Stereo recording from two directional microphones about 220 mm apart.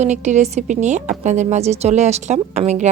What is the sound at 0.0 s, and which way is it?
A woman's voice, 30° right (ahead or behind).